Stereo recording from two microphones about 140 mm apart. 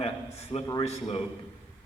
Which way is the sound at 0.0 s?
45° left (ahead or behind).